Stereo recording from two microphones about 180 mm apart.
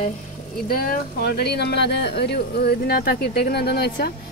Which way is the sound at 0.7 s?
55° left (ahead or behind).